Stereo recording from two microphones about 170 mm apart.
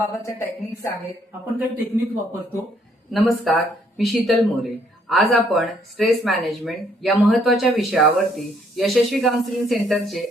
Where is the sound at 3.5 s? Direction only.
Centre (ahead or behind).